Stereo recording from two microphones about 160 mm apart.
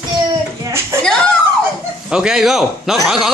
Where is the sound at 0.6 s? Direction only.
15° right (ahead or behind).